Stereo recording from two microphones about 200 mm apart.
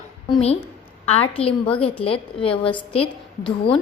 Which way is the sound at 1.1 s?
30° left (ahead or behind).